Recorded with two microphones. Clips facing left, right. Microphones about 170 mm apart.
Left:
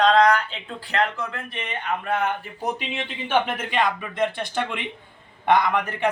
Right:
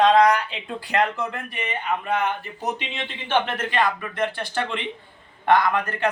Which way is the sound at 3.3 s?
10° left (ahead or behind).